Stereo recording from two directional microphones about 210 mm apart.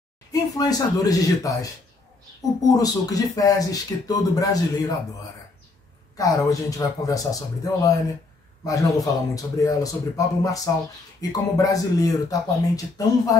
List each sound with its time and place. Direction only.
0.3 s speech: 20° left (ahead or behind)
2.7 s speech: 15° left (ahead or behind)
6.1 s speech: 15° left (ahead or behind)